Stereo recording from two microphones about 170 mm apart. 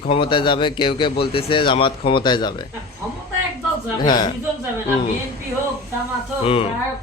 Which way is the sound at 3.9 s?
25° left (ahead or behind).